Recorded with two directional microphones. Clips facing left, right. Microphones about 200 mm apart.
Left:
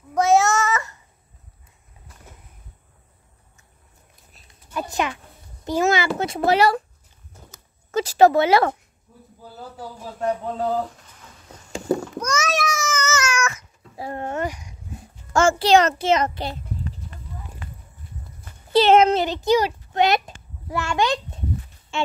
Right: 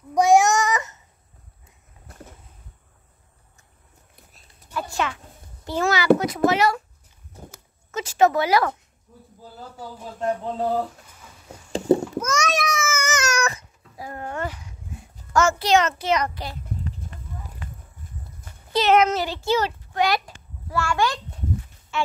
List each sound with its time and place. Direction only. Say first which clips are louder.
0.1 s child singing: right 1 dB; 15° right (ahead or behind)
4.7 s a child's voice: left 2 dB; 20° left (ahead or behind)
7.9 s speech: left 4 dB; 35° left (ahead or behind)
11.7 s a sound: right 4 dB; 25° right (ahead or behind)
12.2 s babbling: even; centre (ahead or behind)
13.0 s cat: left 1 dB; 15° right (ahead or behind)
13.3 s cat: right 1 dB; 35° right (ahead or behind)
13.9 s speech: left 4 dB; 30° left (ahead or behind)
15.6 s a child's voice: left 3 dB; 30° left (ahead or behind)
18.7 s a child's voice: left 4 dB; 30° left (ahead or behind)